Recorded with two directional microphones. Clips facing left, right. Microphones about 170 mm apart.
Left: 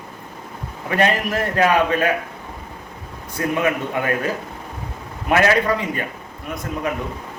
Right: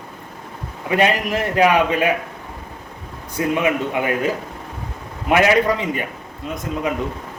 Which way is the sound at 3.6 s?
15° right (ahead or behind).